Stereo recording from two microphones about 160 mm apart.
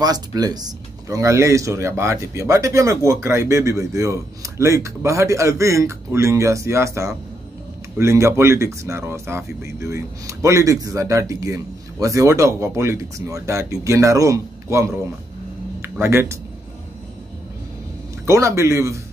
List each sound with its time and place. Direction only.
0.0 s speech: 25° right (ahead or behind)
18.2 s a man's voice: 20° right (ahead or behind)